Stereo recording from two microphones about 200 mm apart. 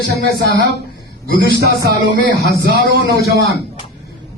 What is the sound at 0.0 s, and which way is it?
Music, 55° right (ahead or behind).